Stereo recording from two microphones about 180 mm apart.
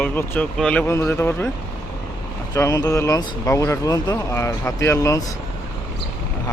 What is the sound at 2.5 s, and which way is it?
Speech, 20° left (ahead or behind).